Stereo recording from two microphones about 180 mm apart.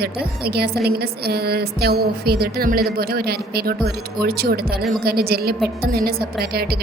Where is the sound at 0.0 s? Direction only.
60° right (ahead or behind).